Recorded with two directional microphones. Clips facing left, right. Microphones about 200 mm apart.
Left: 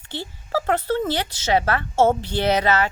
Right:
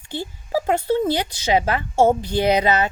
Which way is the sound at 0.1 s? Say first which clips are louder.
Right 2 dB; 15° right (ahead or behind).